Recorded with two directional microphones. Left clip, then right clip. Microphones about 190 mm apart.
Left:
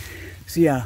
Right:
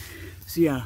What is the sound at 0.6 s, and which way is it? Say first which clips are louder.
Speech: left 4 dB; 30° left (ahead or behind).